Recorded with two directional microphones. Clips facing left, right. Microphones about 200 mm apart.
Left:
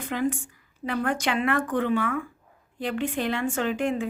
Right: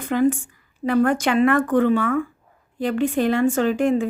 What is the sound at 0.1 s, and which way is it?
Speech, 50° right (ahead or behind).